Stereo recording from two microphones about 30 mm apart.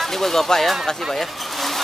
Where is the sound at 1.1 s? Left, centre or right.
Centre.